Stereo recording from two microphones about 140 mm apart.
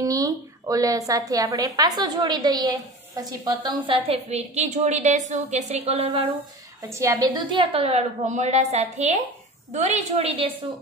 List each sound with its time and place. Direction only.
0.0 s a woman's voice: 25° right (ahead or behind)
4.1 s a woman's voice: 50° right (ahead or behind)
6.9 s a woman's voice: 20° right (ahead or behind); by 10.5 s 45° right (ahead or behind)